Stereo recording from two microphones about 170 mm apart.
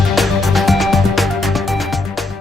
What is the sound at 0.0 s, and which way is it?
Music, centre (ahead or behind).